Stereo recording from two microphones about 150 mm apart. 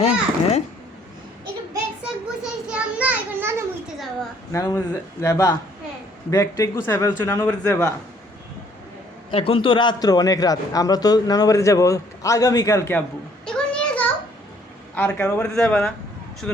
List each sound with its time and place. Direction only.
0.0 s a child's voice: 50° left (ahead or behind)
2.4 s children playing: 5° right (ahead or behind)
3.9 s a sound: centre (ahead or behind)
4.5 s a man's voice: 20° left (ahead or behind)
9.3 s a man's voice: 35° left (ahead or behind); by 13.0 s 20° left (ahead or behind)
13.4 s a sound: 5° left (ahead or behind)
14.9 s a man's voice: 10° left (ahead or behind)